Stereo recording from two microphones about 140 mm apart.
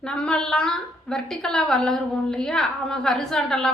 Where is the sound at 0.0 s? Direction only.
5° left (ahead or behind).